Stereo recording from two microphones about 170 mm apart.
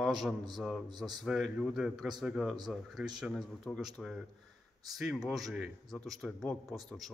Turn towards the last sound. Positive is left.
turn(degrees=0)  # may be behind; listen again after turning